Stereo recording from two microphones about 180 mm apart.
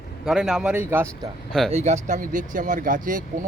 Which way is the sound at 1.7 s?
40° right (ahead or behind).